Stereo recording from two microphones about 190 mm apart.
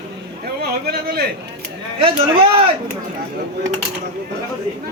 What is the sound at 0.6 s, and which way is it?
Speech, 55° right (ahead or behind).